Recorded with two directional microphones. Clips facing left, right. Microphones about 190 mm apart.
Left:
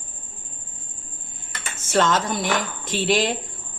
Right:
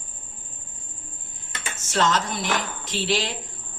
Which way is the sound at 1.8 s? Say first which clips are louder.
Left 3 dB; 55° left (ahead or behind).